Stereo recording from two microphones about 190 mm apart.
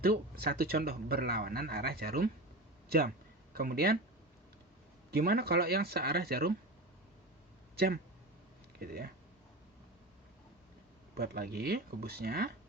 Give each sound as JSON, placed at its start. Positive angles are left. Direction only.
{"t": 0.0, "sound": "speech", "side_deg": -55}
{"t": 3.5, "sound": "speech", "side_deg": -50}
{"t": 5.1, "sound": "speech", "side_deg": -55}
{"t": 8.8, "sound": "speech", "side_deg": -55}
{"t": 11.2, "sound": "speech", "side_deg": -55}